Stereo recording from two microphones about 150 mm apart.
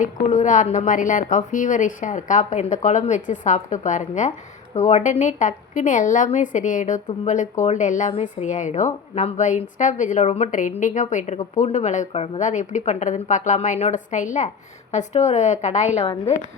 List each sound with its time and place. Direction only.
0.0 s a woman's voice: 55° left (ahead or behind)